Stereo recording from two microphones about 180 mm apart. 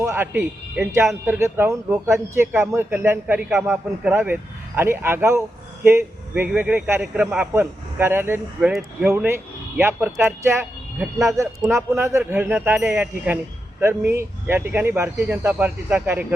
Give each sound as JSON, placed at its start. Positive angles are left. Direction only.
{"t": 0.0, "sound": "speech", "side_deg": -15}